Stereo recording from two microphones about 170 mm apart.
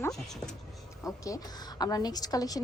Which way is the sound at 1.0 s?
20° left (ahead or behind).